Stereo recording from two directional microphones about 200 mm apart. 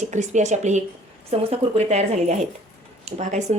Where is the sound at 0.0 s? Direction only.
35° right (ahead or behind).